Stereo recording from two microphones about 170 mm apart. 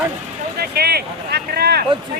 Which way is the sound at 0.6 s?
70° right (ahead or behind).